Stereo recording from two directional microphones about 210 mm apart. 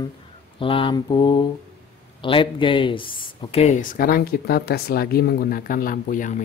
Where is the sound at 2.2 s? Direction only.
25° left (ahead or behind).